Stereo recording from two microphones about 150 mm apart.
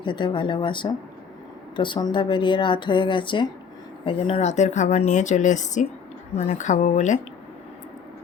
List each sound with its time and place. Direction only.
0.0 s speech: 30° left (ahead or behind); by 7.2 s 55° left (ahead or behind)